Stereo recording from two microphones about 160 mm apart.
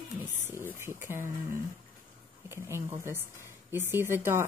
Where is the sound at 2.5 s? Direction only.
15° right (ahead or behind).